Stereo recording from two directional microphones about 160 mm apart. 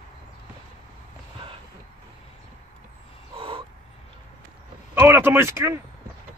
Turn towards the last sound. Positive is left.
turn(degrees=-15)  # may be behind; listen again after turning